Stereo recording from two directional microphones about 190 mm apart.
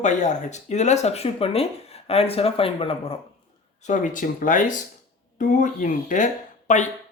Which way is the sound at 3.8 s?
40° left (ahead or behind).